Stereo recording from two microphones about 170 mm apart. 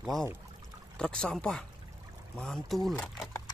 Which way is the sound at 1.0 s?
5° left (ahead or behind).